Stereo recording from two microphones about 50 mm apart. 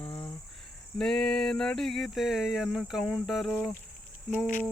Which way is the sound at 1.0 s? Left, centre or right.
Centre.